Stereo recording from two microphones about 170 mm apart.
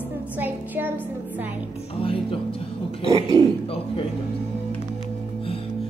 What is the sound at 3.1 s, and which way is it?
Speech, 20° right (ahead or behind).